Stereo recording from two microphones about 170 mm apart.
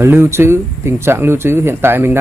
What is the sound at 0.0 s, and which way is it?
Speech, 15° right (ahead or behind).